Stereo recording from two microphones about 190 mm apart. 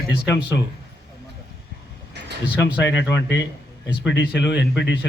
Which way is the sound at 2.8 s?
65° left (ahead or behind).